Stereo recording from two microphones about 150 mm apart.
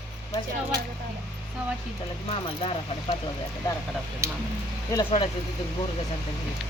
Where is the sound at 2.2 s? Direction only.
40° left (ahead or behind).